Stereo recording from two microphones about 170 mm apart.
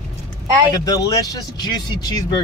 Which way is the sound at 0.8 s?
20° left (ahead or behind).